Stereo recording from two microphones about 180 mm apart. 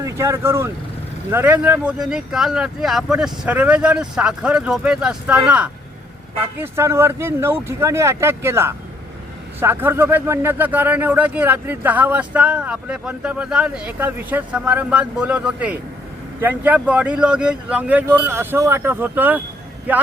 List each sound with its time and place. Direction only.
0.0 s speech: 15° right (ahead or behind)